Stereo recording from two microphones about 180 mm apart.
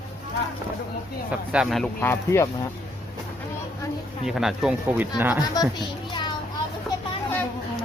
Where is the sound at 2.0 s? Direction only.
15° left (ahead or behind).